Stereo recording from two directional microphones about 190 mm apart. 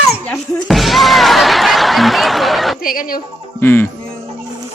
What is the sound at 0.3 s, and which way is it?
Music, centre (ahead or behind).